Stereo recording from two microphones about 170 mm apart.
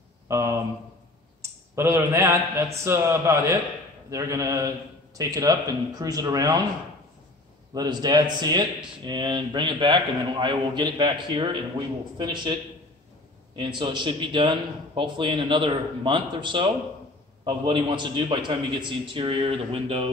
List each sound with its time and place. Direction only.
0.3 s a man's voice: 15° right (ahead or behind)
7.7 s a man's voice: 25° right (ahead or behind)
13.6 s a man's voice: 30° right (ahead or behind)